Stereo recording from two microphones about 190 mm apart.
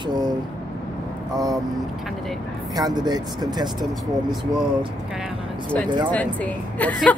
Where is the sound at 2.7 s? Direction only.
20° right (ahead or behind).